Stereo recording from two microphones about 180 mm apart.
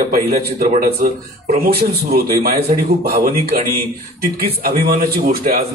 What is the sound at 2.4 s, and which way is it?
A man's voice, 55° right (ahead or behind).